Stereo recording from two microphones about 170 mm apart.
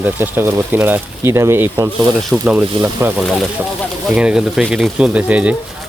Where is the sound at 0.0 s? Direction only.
10° right (ahead or behind).